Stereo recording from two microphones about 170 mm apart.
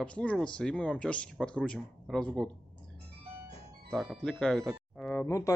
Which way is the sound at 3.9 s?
Centre (ahead or behind).